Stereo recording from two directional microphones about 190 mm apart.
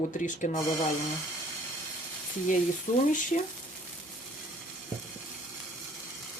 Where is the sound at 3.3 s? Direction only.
45° left (ahead or behind).